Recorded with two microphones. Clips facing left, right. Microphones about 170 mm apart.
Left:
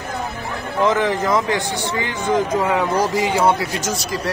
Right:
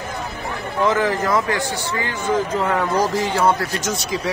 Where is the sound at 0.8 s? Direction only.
20° left (ahead or behind).